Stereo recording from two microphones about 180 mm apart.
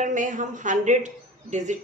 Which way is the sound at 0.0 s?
45° right (ahead or behind).